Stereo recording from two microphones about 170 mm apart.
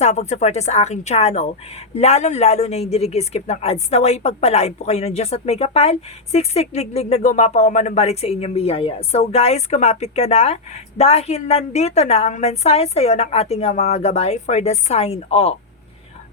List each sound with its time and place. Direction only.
0.0 s speech: 40° left (ahead or behind)